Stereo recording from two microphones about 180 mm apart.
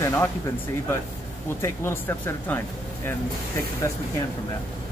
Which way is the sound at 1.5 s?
15° left (ahead or behind).